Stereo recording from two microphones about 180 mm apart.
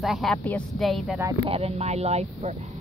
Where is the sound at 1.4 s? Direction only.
30° right (ahead or behind).